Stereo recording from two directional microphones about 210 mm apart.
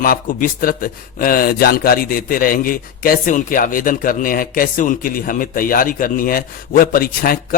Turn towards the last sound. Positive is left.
turn(degrees=45)  # may be behind; listen again after turning